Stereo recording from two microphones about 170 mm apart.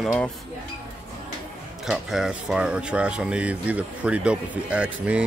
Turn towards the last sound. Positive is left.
turn(degrees=-5)  # may be behind; listen again after turning